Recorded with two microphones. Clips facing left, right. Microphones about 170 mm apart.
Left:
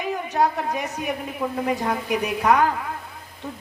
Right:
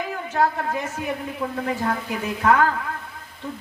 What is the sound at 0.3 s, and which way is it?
A woman's voice, 15° left (ahead or behind).